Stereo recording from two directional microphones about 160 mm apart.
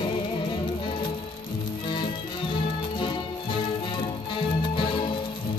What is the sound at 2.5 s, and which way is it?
Music, 30° left (ahead or behind).